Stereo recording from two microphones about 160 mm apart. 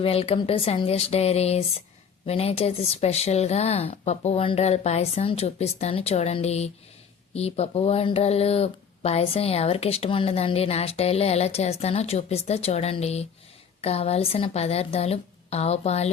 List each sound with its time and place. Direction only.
0.0 s speech: 35° left (ahead or behind)